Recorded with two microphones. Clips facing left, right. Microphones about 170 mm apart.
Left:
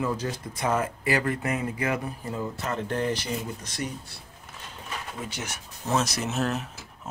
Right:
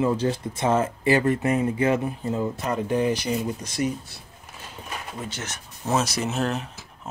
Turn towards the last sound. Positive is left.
turn(degrees=5)  # may be behind; listen again after turning